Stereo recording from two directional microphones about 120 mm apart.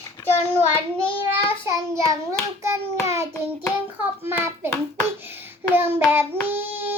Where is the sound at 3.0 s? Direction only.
25° right (ahead or behind).